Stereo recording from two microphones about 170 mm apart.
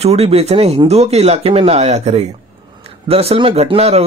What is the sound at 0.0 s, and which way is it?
Speech, 40° right (ahead or behind).